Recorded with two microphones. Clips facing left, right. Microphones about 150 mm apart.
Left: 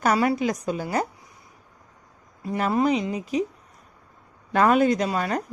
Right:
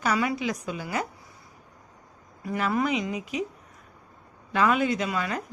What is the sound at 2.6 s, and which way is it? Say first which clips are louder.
Speech: left 4 dB; 35° left (ahead or behind).